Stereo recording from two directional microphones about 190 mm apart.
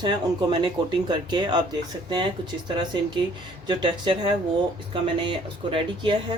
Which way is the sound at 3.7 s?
25° right (ahead or behind).